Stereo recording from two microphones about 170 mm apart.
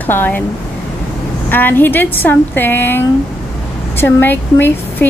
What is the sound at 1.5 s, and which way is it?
Speech, 10° left (ahead or behind).